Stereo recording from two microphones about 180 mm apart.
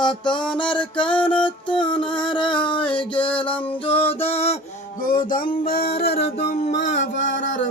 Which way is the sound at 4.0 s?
30° left (ahead or behind).